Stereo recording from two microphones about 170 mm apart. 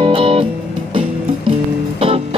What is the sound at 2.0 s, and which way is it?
Music, 35° right (ahead or behind).